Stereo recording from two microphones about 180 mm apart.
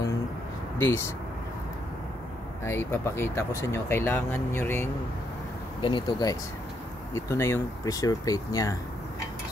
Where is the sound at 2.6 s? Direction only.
15° left (ahead or behind).